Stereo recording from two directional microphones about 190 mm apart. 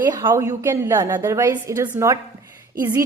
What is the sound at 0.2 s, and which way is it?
A woman's voice, 15° right (ahead or behind).